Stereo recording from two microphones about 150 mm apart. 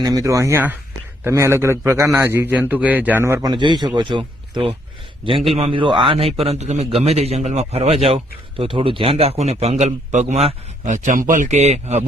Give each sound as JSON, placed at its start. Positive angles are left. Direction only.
{"t": 0.0, "sound": "a man's voice", "side_deg": -25}